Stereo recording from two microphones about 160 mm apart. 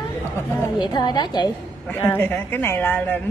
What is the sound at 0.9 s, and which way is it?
Speech, 25° left (ahead or behind).